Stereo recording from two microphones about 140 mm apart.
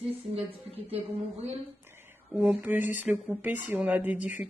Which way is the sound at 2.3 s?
5° right (ahead or behind).